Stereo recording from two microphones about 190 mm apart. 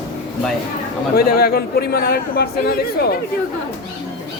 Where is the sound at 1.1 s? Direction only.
50° left (ahead or behind).